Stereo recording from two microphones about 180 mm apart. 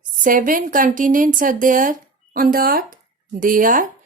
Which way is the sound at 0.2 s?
50° right (ahead or behind).